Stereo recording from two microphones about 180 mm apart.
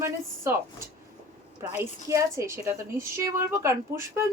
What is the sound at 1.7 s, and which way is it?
A woman's voice, 15° right (ahead or behind).